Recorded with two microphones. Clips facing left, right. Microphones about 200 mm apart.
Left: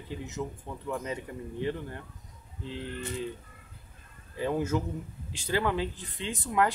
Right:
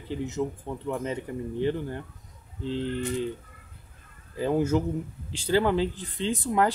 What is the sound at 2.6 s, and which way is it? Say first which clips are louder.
Speech: right 8 dB; 30° right (ahead or behind).